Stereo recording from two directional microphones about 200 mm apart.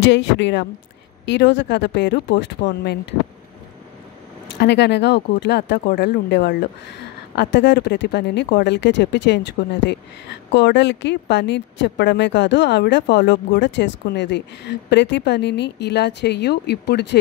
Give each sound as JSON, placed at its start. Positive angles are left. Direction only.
{"t": 0.0, "sound": "speech", "side_deg": 60}
{"t": 4.6, "sound": "speech", "side_deg": 55}